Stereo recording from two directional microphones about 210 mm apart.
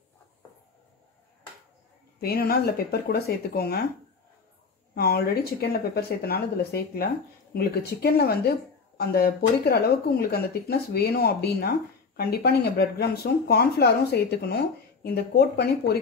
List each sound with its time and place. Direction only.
2.1 s speech: 45° left (ahead or behind)
4.9 s speech: 50° left (ahead or behind)